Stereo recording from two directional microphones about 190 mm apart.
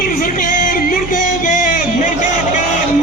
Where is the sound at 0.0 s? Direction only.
45° left (ahead or behind).